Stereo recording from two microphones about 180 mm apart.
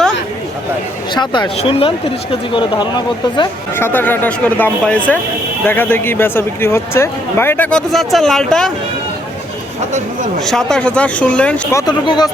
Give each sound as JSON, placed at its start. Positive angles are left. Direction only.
{"t": 1.1, "sound": "speech", "side_deg": 25}
{"t": 3.8, "sound": "speech", "side_deg": 10}
{"t": 10.4, "sound": "speech", "side_deg": 5}
{"t": 11.8, "sound": "speech", "side_deg": 25}